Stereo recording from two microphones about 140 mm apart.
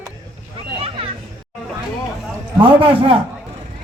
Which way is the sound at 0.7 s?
45° right (ahead or behind).